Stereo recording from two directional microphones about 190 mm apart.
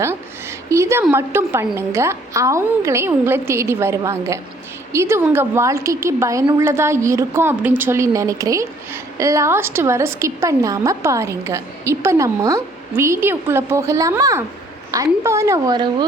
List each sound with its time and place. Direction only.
0.7 s a woman's voice: 15° right (ahead or behind)